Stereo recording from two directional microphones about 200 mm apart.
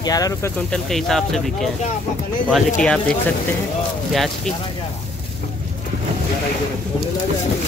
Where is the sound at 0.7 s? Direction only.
Centre (ahead or behind).